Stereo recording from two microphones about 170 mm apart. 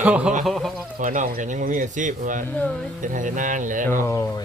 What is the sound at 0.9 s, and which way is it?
Speech, 50° right (ahead or behind).